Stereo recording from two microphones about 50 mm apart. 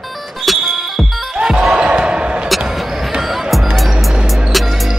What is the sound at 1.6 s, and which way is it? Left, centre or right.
Basketball bounce, centre.